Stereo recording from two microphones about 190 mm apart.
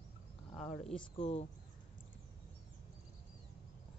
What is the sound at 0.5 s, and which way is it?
Speech, 35° left (ahead or behind).